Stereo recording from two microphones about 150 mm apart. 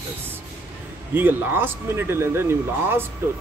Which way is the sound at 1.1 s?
15° right (ahead or behind).